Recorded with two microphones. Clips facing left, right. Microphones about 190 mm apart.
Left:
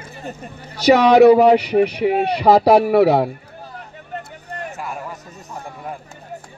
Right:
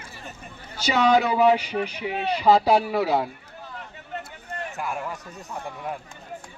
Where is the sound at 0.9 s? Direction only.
70° left (ahead or behind).